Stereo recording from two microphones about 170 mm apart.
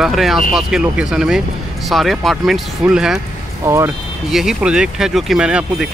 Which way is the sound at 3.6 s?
15° right (ahead or behind).